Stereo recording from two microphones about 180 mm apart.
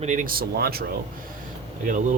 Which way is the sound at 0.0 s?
45° right (ahead or behind).